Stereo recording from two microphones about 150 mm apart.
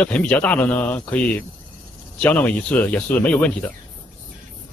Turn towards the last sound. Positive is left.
turn(degrees=10)  # may be behind; listen again after turning